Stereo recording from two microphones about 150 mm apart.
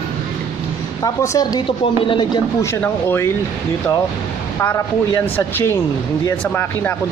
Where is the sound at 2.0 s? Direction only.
35° left (ahead or behind).